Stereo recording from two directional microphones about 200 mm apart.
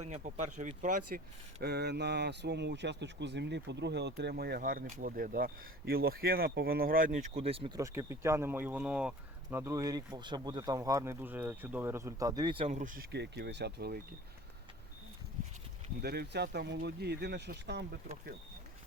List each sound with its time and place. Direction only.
0.0 s speech: 35° right (ahead or behind)
7.8 s speech: 15° right (ahead or behind); by 13.1 s 40° right (ahead or behind)
13.1 s speech: 55° right (ahead or behind)
16.0 s speech: 50° right (ahead or behind)